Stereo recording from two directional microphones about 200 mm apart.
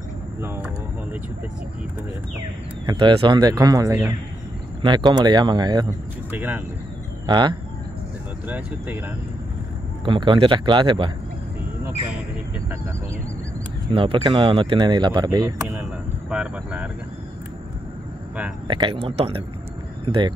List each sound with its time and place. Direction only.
2.9 s speech: 25° right (ahead or behind)
6.3 s speech: 10° right (ahead or behind)
7.2 s speech: 20° right (ahead or behind)
8.5 s speech: 10° right (ahead or behind)
10.0 s speech: 25° right (ahead or behind)
13.9 s speech: 25° right (ahead or behind)
16.3 s speech: 5° right (ahead or behind)
18.7 s speech: 25° right (ahead or behind)